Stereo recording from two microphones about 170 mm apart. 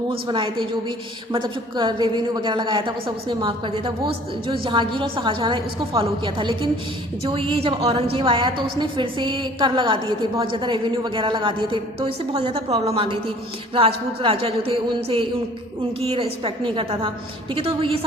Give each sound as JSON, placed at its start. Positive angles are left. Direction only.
{"t": 0.1, "sound": "a woman's voice", "side_deg": -30}